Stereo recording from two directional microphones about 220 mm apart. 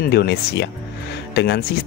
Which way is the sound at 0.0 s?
50° left (ahead or behind).